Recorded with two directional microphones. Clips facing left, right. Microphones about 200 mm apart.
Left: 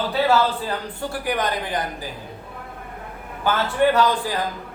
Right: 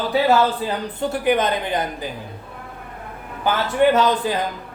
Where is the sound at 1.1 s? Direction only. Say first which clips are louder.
Right 5 dB; 25° right (ahead or behind).